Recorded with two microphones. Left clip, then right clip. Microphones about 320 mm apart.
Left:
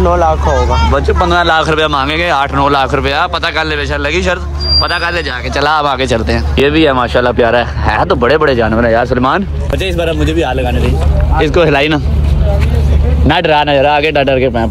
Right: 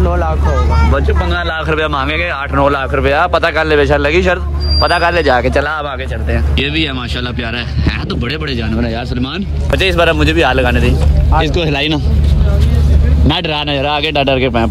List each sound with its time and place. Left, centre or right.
0.0 s a sound: left
0.9 s speech: centre
6.6 s speech: centre
11.3 s speech: centre
13.3 s speech: centre